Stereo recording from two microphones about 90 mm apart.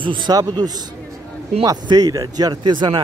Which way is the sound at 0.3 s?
45° right (ahead or behind).